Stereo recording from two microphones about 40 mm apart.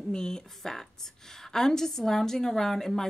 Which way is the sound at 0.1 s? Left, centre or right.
Centre.